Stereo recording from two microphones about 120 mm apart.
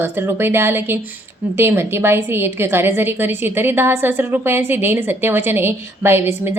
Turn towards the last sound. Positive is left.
turn(degrees=-20)  # may be behind; listen again after turning